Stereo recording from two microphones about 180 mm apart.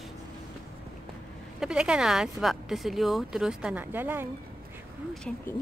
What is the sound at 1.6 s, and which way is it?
Speech, 5° right (ahead or behind).